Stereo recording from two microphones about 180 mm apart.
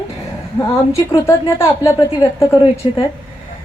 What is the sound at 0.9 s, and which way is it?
Speech, 15° left (ahead or behind).